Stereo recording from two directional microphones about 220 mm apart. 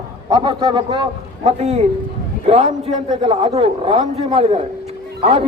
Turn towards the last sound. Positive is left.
turn(degrees=-25)  # may be behind; listen again after turning